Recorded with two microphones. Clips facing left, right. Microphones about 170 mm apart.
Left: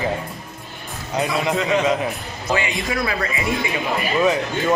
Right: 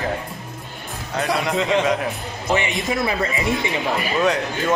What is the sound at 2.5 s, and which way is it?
Speech, 20° right (ahead or behind).